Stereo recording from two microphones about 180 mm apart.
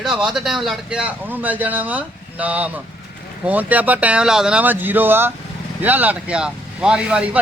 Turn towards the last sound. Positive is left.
turn(degrees=-5)  # may be behind; listen again after turning